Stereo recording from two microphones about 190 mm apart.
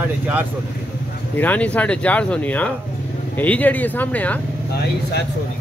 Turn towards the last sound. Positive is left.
turn(degrees=10)  # may be behind; listen again after turning